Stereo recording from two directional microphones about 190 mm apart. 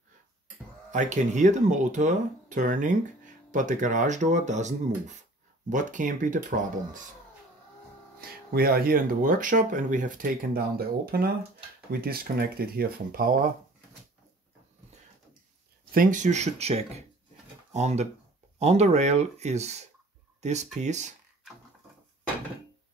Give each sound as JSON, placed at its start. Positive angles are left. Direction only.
{"t": 0.9, "sound": "speech", "side_deg": -40}
{"t": 8.2, "sound": "speech", "side_deg": -50}
{"t": 15.9, "sound": "speech", "side_deg": -45}